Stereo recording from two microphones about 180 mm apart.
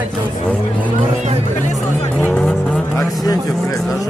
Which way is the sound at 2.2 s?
5° left (ahead or behind).